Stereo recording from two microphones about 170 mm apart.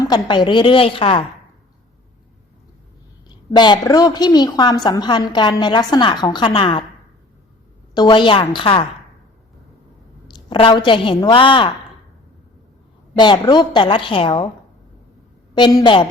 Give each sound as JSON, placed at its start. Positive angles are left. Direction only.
{"t": 0.0, "sound": "a woman's voice", "side_deg": 25}
{"t": 3.2, "sound": "a woman's voice", "side_deg": 25}
{"t": 7.9, "sound": "a woman's voice", "side_deg": 25}
{"t": 10.2, "sound": "a woman's voice", "side_deg": 30}
{"t": 13.1, "sound": "a woman's voice", "side_deg": 25}
{"t": 15.5, "sound": "a woman's voice", "side_deg": 25}